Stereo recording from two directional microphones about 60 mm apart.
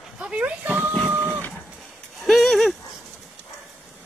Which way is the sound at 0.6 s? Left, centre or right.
Right.